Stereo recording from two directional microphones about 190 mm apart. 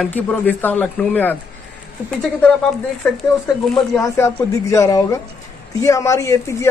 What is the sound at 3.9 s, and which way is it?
A man's voice, 15° left (ahead or behind).